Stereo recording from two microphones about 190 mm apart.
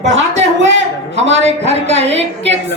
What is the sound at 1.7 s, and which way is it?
Speech, 35° right (ahead or behind).